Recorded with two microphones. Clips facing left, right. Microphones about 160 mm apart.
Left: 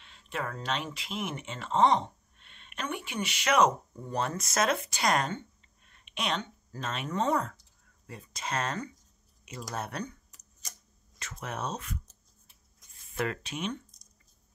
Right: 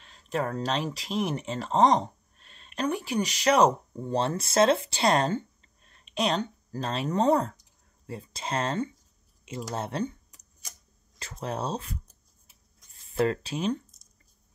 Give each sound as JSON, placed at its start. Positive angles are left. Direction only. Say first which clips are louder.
{"t": 0.0, "sound": "speech", "louder": "right 6 dB", "side_deg": -40}
{"t": 11.1, "sound": "speech", "louder": "right 5 dB", "side_deg": -30}
{"t": 13.1, "sound": "speech", "louder": "right 7 dB", "side_deg": -30}